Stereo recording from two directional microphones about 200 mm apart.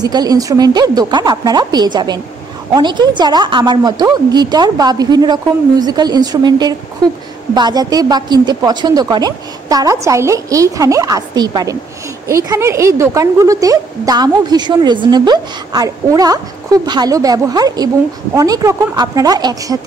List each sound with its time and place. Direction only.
0.0 s a woman's voice: 20° right (ahead or behind)